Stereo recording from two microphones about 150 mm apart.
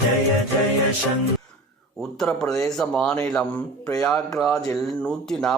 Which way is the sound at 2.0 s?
5° left (ahead or behind).